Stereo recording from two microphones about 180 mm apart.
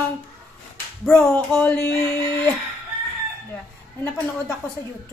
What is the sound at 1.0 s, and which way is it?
Speech, 5° left (ahead or behind).